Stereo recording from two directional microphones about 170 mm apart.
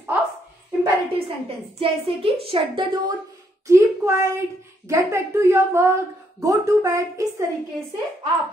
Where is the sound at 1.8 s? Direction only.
35° right (ahead or behind).